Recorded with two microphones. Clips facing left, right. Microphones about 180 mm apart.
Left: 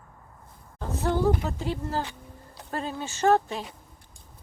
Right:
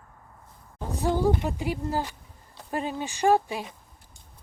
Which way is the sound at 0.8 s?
15° right (ahead or behind).